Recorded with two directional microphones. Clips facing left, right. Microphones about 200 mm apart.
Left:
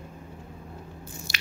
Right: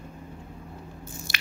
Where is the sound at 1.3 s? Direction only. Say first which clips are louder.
Right 1 dB; 55° right (ahead or behind).